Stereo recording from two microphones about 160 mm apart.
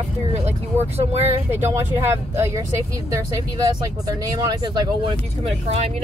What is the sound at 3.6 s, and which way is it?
Speech, 25° right (ahead or behind).